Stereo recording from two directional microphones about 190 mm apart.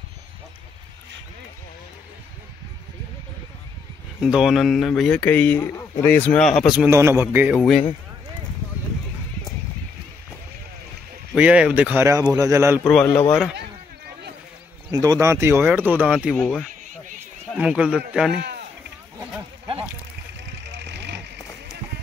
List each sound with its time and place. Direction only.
4.2 s speech: 5° right (ahead or behind)
6.9 s a man's voice: 15° right (ahead or behind)
11.3 s a man's voice: 5° right (ahead or behind)
12.8 s speech: 5° left (ahead or behind)
14.9 s a man's voice: 20° right (ahead or behind)
16.3 s speech: 5° left (ahead or behind)
17.6 s speech: 5° right (ahead or behind)
18.4 s a sound: 60° right (ahead or behind)
20.6 s vehicle: 65° right (ahead or behind)